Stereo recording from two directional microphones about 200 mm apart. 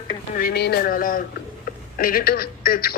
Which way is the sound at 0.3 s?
50° left (ahead or behind).